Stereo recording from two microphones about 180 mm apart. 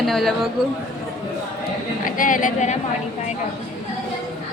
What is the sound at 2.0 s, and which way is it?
Speech, 45° left (ahead or behind).